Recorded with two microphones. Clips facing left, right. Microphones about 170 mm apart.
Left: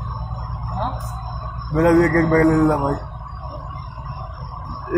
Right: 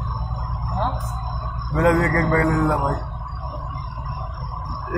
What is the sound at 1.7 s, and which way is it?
A man's voice, 40° left (ahead or behind).